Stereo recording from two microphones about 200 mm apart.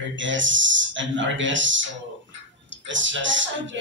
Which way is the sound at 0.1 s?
70° right (ahead or behind).